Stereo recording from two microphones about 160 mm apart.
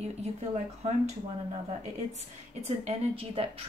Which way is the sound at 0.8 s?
45° right (ahead or behind).